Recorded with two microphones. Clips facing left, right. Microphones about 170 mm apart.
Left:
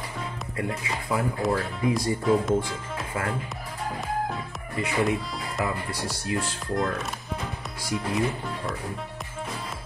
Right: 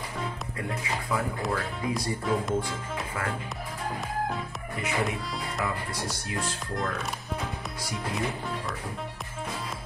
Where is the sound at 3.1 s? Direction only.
30° left (ahead or behind).